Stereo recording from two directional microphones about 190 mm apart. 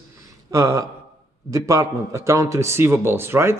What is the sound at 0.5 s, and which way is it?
A man's voice, 15° right (ahead or behind).